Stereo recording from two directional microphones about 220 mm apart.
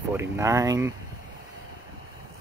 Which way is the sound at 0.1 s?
10° right (ahead or behind).